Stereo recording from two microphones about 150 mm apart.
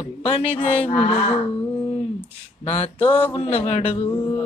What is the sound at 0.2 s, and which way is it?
Speech, 40° left (ahead or behind).